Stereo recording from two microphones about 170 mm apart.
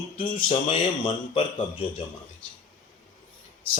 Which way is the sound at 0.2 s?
30° left (ahead or behind).